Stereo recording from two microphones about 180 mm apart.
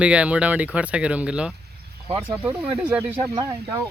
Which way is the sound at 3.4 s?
20° right (ahead or behind).